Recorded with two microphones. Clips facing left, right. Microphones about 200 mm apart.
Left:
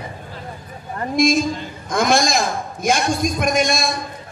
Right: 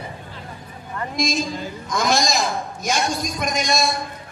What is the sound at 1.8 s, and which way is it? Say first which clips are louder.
A man's voice: left 4 dB; 55° left (ahead or behind).